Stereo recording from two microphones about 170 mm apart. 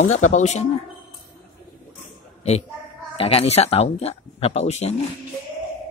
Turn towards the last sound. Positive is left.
turn(degrees=40)  # may be behind; listen again after turning